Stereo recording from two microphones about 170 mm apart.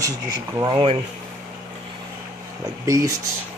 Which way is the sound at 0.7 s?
30° right (ahead or behind).